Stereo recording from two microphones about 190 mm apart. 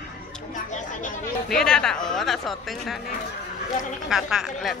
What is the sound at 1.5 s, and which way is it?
Speech, 5° left (ahead or behind).